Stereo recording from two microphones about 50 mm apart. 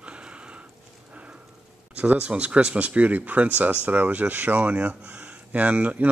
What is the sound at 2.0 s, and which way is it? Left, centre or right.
Speech, right.